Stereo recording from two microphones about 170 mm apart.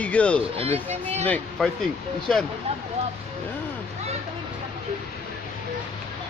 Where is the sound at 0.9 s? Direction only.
40° right (ahead or behind).